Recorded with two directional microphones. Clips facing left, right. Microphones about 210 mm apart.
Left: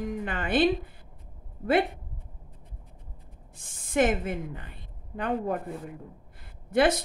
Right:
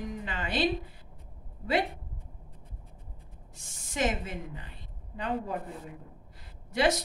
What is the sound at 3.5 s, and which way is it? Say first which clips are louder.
Speech: left 12 dB; 55° left (ahead or behind).